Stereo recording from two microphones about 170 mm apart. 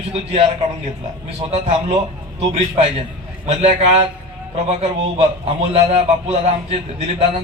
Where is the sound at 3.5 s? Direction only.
40° right (ahead or behind).